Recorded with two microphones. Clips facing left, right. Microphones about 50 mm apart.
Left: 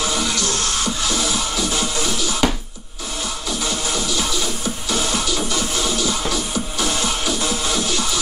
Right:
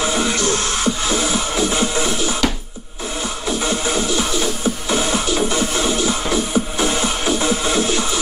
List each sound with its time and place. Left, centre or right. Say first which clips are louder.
0.0 s music: right 3 dB; right
3.4 s music: right 5 dB; right